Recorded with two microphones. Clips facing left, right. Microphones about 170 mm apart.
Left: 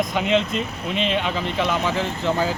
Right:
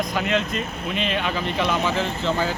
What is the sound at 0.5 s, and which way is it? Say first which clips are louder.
Speech: left 2 dB; 90° left.